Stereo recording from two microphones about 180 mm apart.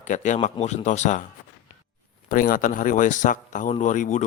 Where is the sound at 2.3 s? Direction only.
50° left (ahead or behind).